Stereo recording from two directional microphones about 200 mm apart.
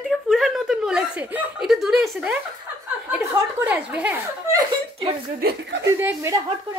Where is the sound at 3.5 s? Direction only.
5° right (ahead or behind).